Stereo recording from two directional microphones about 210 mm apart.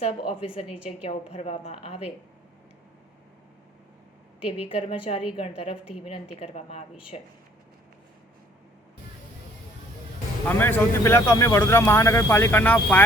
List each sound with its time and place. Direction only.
0.0 s a woman's voice: 25° left (ahead or behind)
4.4 s a woman's voice: 30° left (ahead or behind)
10.5 s a man's voice: 10° left (ahead or behind)